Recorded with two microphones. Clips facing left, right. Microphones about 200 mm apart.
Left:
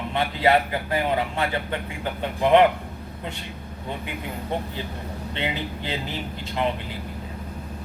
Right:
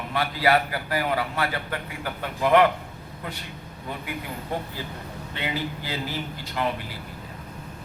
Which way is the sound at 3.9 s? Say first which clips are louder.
Left 1 dB; 20° left (ahead or behind).